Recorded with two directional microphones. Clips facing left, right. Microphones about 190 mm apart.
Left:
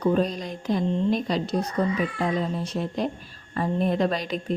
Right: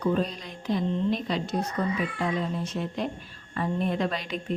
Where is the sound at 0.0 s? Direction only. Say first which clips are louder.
Left 4 dB; 40° left (ahead or behind).